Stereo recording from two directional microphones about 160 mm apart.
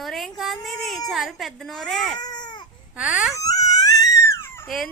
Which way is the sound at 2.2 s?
25° left (ahead or behind).